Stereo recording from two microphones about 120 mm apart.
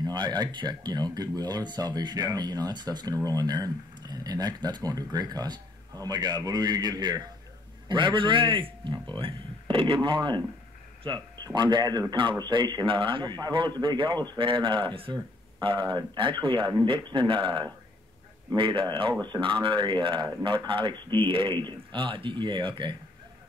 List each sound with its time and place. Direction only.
0.0 s a man's voice: 35° right (ahead or behind)